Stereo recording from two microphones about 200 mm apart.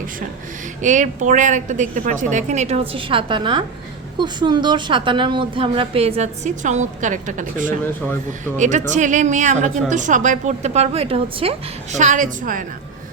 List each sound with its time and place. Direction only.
0.8 s a woman's voice: 40° right (ahead or behind)